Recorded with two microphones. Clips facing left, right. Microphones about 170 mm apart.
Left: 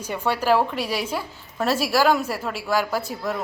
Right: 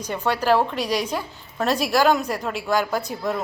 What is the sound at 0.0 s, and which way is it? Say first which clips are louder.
A woman's voice: right 1 dB; 10° left (ahead or behind).